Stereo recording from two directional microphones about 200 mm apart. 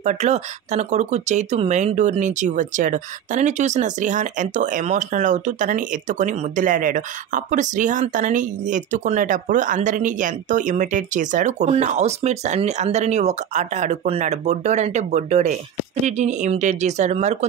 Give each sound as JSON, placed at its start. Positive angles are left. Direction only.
{"t": 0.0, "sound": "speech", "side_deg": -35}